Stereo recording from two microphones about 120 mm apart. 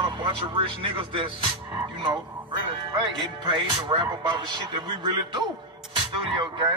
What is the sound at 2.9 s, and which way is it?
Music, 40° right (ahead or behind).